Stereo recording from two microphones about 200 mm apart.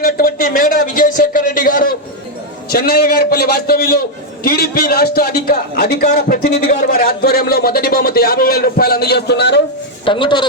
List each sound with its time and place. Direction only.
0.0 s a man's voice: 45° left (ahead or behind)
10.1 s speech: 25° left (ahead or behind)